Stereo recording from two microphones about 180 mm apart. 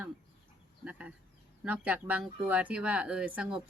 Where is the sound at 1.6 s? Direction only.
5° right (ahead or behind).